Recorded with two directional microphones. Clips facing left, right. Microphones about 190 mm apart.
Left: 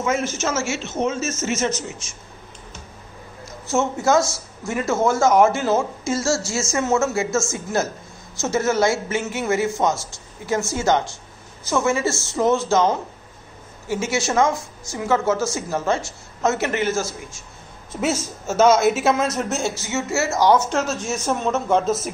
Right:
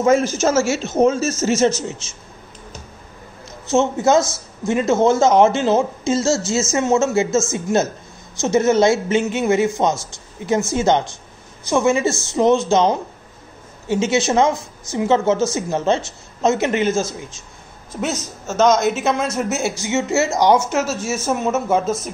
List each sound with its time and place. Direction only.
0.0 s speech: 35° right (ahead or behind)
3.7 s speech: 20° right (ahead or behind)
18.0 s speech: 10° left (ahead or behind)
19.6 s speech: 15° right (ahead or behind); by 22.1 s centre (ahead or behind)